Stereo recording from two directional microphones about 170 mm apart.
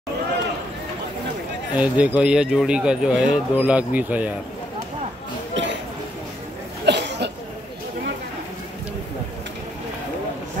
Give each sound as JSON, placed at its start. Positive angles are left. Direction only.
{"t": 1.8, "sound": "speech", "side_deg": -10}
{"t": 5.6, "sound": "a sound", "side_deg": -90}
{"t": 6.9, "sound": "cough", "side_deg": -90}